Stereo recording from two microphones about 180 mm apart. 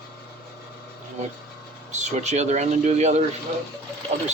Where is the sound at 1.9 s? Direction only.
40° right (ahead or behind).